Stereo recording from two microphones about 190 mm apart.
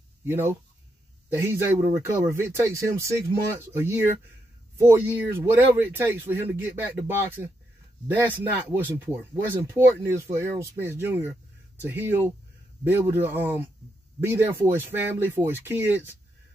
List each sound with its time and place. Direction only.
0.2 s speech: 10° right (ahead or behind)